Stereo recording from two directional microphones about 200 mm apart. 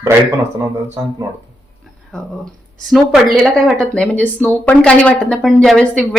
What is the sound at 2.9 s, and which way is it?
Speech, centre (ahead or behind).